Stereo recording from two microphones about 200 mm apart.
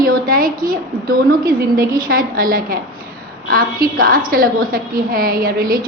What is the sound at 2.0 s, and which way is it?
Speech, 45° right (ahead or behind).